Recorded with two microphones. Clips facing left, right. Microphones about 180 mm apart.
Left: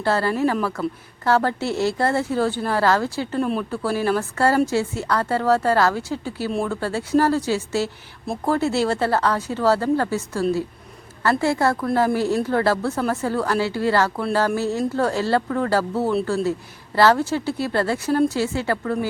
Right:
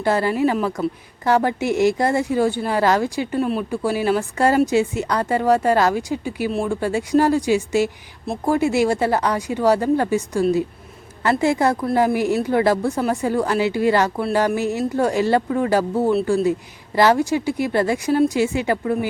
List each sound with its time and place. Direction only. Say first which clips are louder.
0.0 s a woman's voice: right 2 dB; 15° right (ahead or behind)